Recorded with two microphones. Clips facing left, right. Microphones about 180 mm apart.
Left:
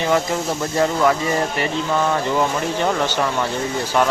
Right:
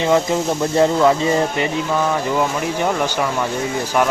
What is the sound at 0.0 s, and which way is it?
Speech, 20° right (ahead or behind).